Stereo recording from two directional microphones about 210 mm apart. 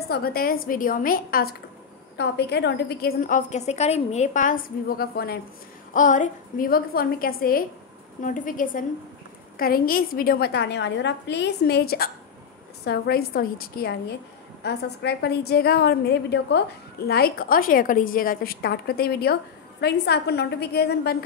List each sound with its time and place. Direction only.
0.1 s a woman's voice: 45° left (ahead or behind)